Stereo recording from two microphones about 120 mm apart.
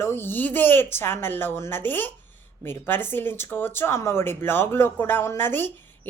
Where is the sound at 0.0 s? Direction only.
20° left (ahead or behind).